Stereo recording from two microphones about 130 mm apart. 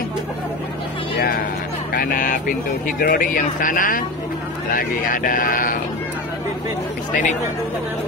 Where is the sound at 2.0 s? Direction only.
90° left.